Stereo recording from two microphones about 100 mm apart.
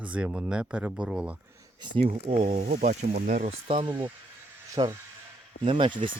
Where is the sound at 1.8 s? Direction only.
50° right (ahead or behind).